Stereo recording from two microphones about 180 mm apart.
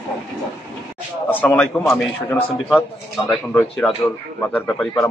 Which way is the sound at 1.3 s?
10° left (ahead or behind).